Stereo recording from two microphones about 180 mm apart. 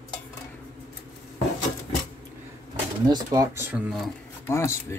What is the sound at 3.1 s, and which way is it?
Speech, 20° right (ahead or behind).